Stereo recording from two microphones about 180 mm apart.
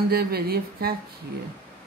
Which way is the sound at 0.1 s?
60° right (ahead or behind).